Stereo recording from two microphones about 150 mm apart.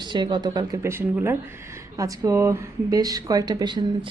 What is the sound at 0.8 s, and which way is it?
A woman's voice, 15° right (ahead or behind).